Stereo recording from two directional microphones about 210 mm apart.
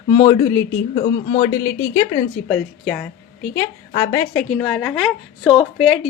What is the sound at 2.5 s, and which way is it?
A woman's voice, 5° left (ahead or behind).